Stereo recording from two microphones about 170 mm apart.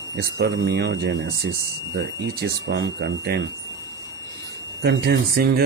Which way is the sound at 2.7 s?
75° right (ahead or behind).